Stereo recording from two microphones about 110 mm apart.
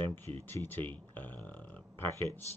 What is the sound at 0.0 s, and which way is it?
Speech, 20° left (ahead or behind).